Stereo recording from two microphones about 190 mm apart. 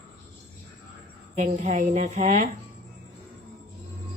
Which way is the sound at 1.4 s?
40° right (ahead or behind).